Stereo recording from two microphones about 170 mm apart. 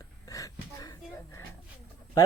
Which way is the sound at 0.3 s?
20° left (ahead or behind).